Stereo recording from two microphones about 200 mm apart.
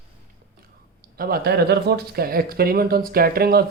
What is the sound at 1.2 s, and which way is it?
Speech, 50° right (ahead or behind).